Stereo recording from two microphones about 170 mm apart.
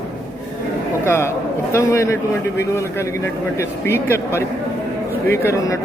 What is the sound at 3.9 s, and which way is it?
Speech, 15° left (ahead or behind).